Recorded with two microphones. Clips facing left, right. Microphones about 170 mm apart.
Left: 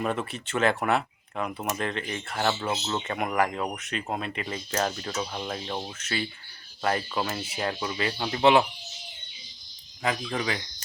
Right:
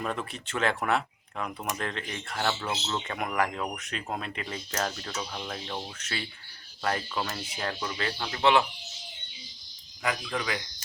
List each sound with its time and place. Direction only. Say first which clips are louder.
0.0 s speech: left 4 dB; 5° left (ahead or behind); by 8.6 s 20° left (ahead or behind)
10.0 s speech: left 3 dB; 25° left (ahead or behind)